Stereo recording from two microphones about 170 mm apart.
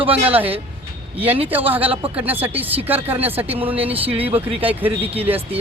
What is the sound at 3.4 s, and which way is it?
Speech, 35° right (ahead or behind).